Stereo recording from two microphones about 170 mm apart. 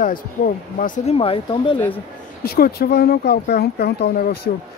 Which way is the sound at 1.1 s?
35° left (ahead or behind).